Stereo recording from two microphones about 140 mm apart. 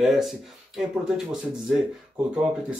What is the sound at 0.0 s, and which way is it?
Speech, centre (ahead or behind).